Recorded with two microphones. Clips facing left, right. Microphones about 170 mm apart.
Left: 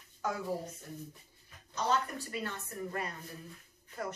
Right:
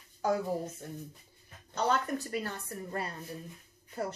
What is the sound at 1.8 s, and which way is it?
Speech, 60° right (ahead or behind).